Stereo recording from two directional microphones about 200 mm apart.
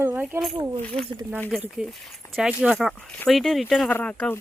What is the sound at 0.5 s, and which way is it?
Speech, 20° right (ahead or behind).